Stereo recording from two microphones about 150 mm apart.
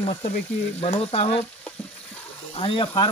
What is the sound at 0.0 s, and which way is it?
Frying, 45° left (ahead or behind).